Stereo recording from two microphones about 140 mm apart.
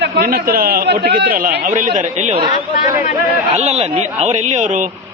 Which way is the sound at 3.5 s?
50° right (ahead or behind).